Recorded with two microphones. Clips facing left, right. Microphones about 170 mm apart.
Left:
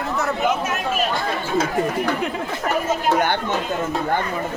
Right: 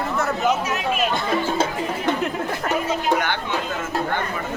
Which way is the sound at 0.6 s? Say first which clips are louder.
Even; 50° left (ahead or behind).